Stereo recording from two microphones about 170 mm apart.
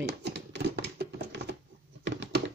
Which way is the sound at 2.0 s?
90° right.